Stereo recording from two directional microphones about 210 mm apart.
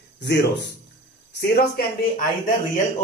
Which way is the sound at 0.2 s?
55° left (ahead or behind).